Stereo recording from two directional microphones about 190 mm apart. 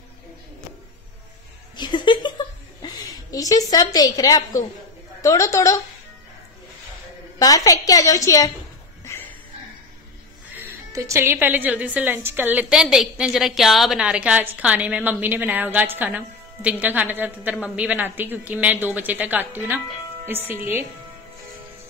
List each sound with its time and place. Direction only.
1.8 s a sound: 25° left (ahead or behind)
2.8 s a woman's voice: 20° left (ahead or behind)
7.3 s a woman's voice: 20° left (ahead or behind)
9.0 s music: 15° left (ahead or behind)
10.5 s a woman's voice: 15° right (ahead or behind)